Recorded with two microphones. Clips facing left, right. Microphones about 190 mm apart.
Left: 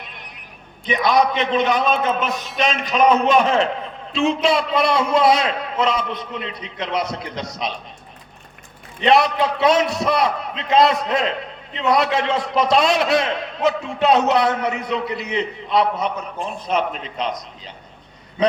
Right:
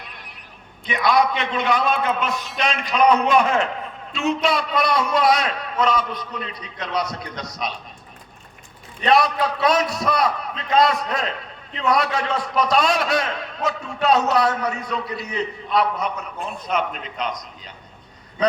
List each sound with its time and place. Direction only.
0.9 s a man's voice: 20° left (ahead or behind)
9.0 s a man's voice: 25° left (ahead or behind)